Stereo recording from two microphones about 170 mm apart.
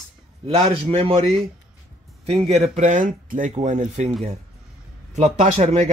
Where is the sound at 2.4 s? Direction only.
35° right (ahead or behind).